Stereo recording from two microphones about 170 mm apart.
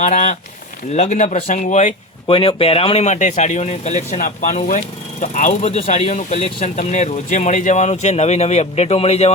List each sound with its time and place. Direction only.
0.0 s speech: 45° left (ahead or behind)
2.2 s speech: 30° left (ahead or behind)